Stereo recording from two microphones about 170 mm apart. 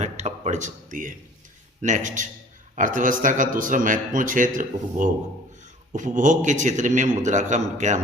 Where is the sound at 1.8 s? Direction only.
45° right (ahead or behind).